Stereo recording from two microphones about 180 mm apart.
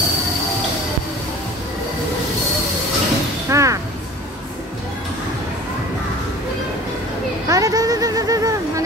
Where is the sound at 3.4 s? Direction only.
15° right (ahead or behind).